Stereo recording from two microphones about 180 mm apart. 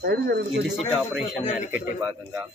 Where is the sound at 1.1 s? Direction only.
Centre (ahead or behind).